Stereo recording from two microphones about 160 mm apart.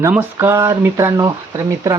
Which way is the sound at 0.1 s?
15° right (ahead or behind).